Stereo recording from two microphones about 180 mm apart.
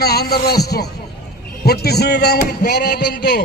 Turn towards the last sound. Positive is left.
turn(degrees=65)  # may be behind; listen again after turning